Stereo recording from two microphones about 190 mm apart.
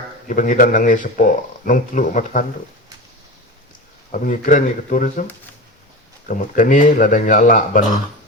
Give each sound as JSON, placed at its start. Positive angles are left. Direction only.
{"t": 0.3, "sound": "speech", "side_deg": 45}
{"t": 4.1, "sound": "speech", "side_deg": 45}
{"t": 6.2, "sound": "speech", "side_deg": 45}